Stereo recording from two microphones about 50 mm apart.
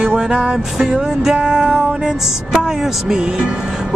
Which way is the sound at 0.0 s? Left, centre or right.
Centre.